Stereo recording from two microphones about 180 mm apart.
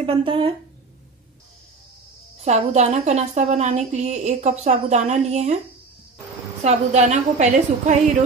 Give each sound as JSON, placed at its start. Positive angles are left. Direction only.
{"t": 0.0, "sound": "speech", "side_deg": -30}
{"t": 2.4, "sound": "a woman's voice", "side_deg": -40}
{"t": 6.6, "sound": "a woman's voice", "side_deg": -40}